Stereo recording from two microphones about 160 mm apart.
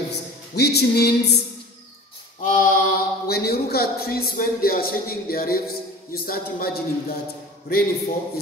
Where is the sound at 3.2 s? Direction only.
75° left (ahead or behind).